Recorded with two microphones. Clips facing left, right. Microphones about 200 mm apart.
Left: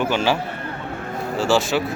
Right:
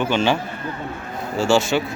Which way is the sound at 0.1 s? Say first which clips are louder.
Right 1 dB; 5° left (ahead or behind).